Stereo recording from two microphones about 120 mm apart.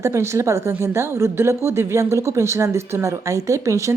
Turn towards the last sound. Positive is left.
turn(degrees=-25)  # may be behind; listen again after turning